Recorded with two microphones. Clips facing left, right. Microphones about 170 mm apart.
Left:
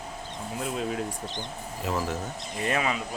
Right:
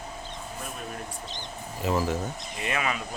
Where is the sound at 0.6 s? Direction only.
90° left.